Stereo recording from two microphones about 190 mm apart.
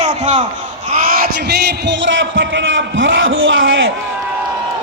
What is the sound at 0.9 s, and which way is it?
A man's voice, 50° right (ahead or behind).